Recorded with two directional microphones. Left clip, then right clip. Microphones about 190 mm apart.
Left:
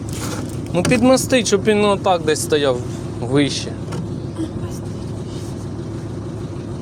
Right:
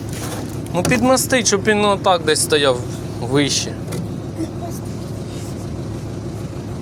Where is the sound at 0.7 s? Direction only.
25° left (ahead or behind).